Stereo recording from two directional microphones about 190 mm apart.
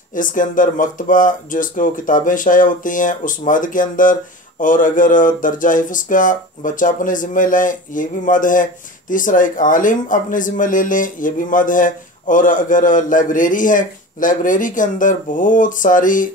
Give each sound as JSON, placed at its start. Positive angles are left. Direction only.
{"t": 0.1, "sound": "speech", "side_deg": 45}